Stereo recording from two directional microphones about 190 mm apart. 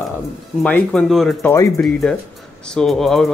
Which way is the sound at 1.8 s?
5° left (ahead or behind).